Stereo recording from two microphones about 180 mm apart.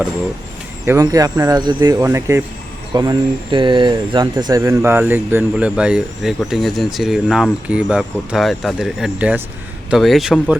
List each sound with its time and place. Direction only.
0.9 s speech: 20° right (ahead or behind); by 10.5 s centre (ahead or behind)